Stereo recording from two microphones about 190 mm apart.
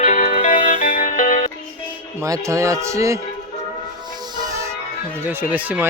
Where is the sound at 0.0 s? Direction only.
45° left (ahead or behind).